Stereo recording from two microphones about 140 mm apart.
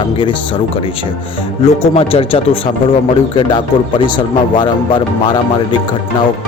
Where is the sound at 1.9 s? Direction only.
45° left (ahead or behind).